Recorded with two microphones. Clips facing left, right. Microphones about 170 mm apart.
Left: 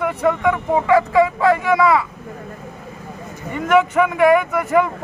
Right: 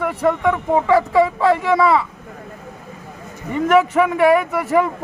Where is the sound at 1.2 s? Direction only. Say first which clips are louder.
Even; 30° right (ahead or behind).